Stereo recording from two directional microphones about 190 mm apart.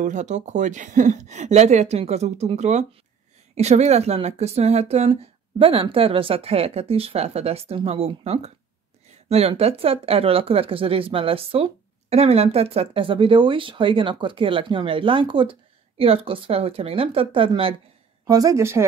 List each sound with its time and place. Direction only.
0.0 s a woman's voice: 40° right (ahead or behind); by 18.9 s 15° right (ahead or behind)